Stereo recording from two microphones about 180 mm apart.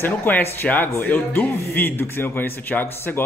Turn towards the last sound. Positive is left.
turn(degrees=10)  # may be behind; listen again after turning